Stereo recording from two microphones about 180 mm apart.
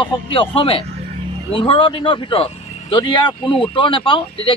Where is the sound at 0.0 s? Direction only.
30° left (ahead or behind).